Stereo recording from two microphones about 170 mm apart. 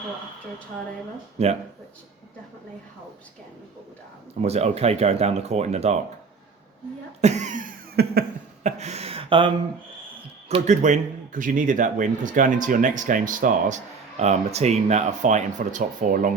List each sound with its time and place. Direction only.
1.4 s speech: 40° right (ahead or behind)
4.4 s speech: 40° right (ahead or behind)
7.2 s cough: 45° right (ahead or behind); by 8.2 s 60° right (ahead or behind)
8.6 s speech: 40° right (ahead or behind)
10.5 s a man's voice: 45° right (ahead or behind)